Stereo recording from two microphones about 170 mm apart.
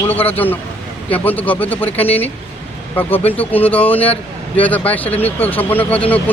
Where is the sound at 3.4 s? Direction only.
10° left (ahead or behind).